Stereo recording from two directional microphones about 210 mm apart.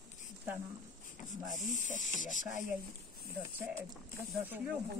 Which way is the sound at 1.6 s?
35° left (ahead or behind).